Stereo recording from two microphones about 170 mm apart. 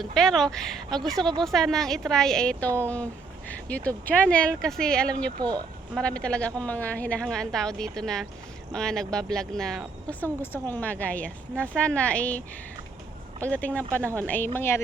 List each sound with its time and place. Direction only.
0.0 s a woman's voice: 5° left (ahead or behind)
5.4 s speech: 25° right (ahead or behind)
5.9 s a woman's voice: 5° left (ahead or behind)
13.4 s speech: 10° left (ahead or behind)